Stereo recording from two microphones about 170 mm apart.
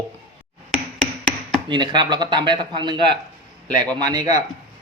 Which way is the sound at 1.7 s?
25° right (ahead or behind).